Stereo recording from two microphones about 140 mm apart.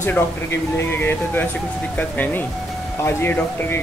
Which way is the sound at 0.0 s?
15° left (ahead or behind).